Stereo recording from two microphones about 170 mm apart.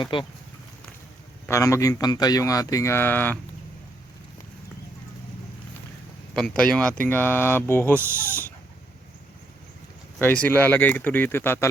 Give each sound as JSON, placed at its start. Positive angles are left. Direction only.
{"t": 0.0, "sound": "speech", "side_deg": 30}
{"t": 1.5, "sound": "speech", "side_deg": 15}
{"t": 6.3, "sound": "speech", "side_deg": 5}
{"t": 10.2, "sound": "speech", "side_deg": 10}